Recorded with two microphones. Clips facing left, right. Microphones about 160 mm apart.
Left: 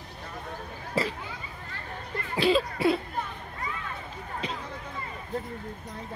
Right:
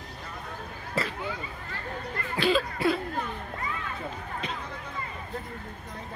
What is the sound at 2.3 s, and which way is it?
Cough, 25° left (ahead or behind).